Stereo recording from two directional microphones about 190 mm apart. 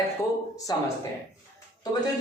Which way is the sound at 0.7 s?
20° left (ahead or behind).